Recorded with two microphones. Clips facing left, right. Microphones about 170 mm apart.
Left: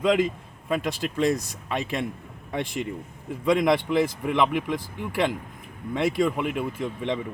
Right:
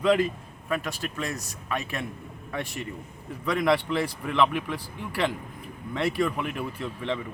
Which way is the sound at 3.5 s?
15° left (ahead or behind).